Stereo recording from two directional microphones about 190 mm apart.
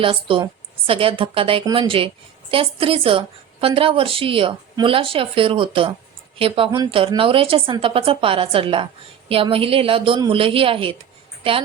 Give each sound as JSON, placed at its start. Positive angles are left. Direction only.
{"t": 0.0, "sound": "a woman's voice", "side_deg": -25}